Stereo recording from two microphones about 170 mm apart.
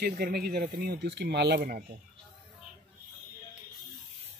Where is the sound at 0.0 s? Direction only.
60° right (ahead or behind).